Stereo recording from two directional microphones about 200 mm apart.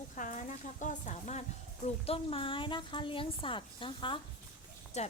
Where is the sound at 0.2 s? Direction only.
40° left (ahead or behind).